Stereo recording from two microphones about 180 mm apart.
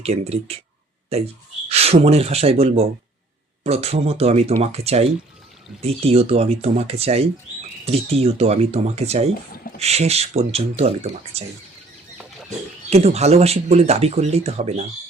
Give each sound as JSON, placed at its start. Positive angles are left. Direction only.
{"t": 0.0, "sound": "speech", "side_deg": -35}
{"t": 12.9, "sound": "speech", "side_deg": -35}